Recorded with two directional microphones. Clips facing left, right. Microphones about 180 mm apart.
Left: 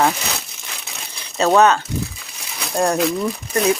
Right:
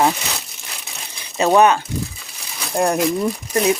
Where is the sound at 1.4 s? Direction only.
15° right (ahead or behind).